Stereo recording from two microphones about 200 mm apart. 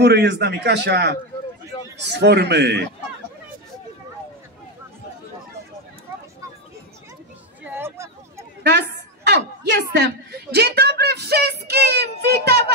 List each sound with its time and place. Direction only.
0.0 s a man's voice: 55° right (ahead or behind)
7.6 s a sound: 10° right (ahead or behind)
8.6 s a woman's voice: 55° right (ahead or behind)